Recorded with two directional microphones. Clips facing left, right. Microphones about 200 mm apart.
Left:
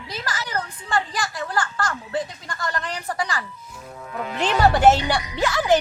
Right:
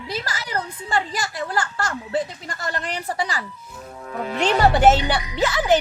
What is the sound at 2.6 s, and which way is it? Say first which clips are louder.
Speech: right 1 dB; 25° right (ahead or behind).